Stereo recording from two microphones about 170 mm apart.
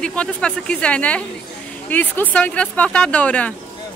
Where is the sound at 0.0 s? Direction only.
5° left (ahead or behind).